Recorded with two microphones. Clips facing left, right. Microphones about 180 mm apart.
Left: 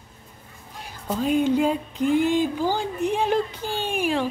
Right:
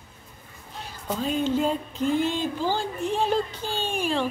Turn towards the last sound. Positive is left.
turn(degrees=15)  # may be behind; listen again after turning